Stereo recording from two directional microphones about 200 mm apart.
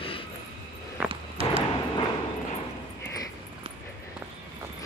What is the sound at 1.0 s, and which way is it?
Walk, 30° right (ahead or behind).